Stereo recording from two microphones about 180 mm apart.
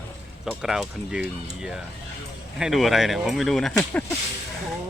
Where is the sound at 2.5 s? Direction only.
Centre (ahead or behind).